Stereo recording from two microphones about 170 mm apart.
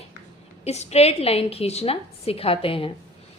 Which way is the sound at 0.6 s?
40° left (ahead or behind).